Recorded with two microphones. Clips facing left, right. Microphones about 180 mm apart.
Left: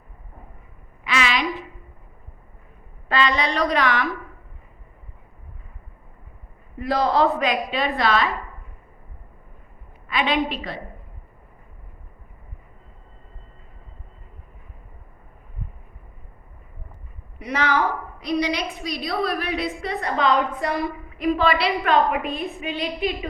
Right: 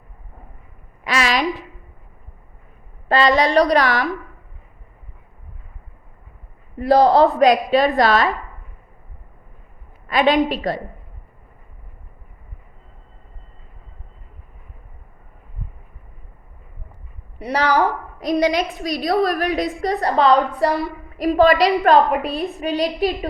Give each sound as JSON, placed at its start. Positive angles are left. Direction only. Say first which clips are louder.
{"t": 1.0, "sound": "a sound", "louder": "right 4 dB", "side_deg": -40}
{"t": 3.1, "sound": "a woman's voice", "louder": "right 6 dB", "side_deg": -35}
{"t": 6.7, "sound": "a woman's voice", "louder": "right 7 dB", "side_deg": -35}
{"t": 10.1, "sound": "a woman's voice", "louder": "right 6 dB", "side_deg": -40}
{"t": 17.4, "sound": "a woman's voice", "louder": "right 4 dB", "side_deg": -35}